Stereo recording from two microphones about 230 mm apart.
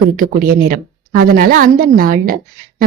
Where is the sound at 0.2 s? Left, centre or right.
Right.